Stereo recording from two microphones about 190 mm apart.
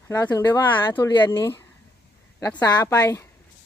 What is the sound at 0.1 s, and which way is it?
Speech, 15° left (ahead or behind).